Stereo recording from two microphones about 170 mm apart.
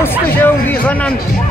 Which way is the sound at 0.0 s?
10° left (ahead or behind).